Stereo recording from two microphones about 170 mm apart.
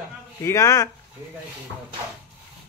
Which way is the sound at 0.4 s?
15° left (ahead or behind).